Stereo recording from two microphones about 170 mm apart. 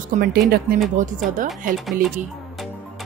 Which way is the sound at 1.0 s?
50° right (ahead or behind).